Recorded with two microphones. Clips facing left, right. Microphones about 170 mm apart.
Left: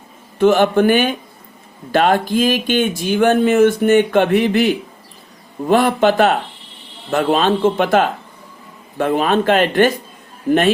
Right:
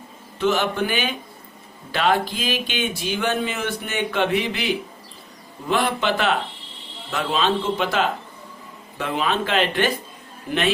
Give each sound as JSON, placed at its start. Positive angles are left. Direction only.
{"t": 0.3, "sound": "a man's voice", "side_deg": 50}